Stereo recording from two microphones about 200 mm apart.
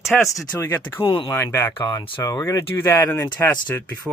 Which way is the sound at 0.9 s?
25° left (ahead or behind).